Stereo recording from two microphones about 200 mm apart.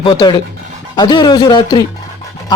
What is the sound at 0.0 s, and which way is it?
Speech, 20° left (ahead or behind).